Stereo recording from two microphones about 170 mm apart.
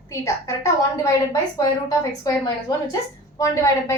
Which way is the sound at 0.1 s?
20° left (ahead or behind).